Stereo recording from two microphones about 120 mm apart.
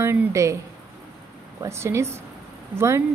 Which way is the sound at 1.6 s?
20° right (ahead or behind).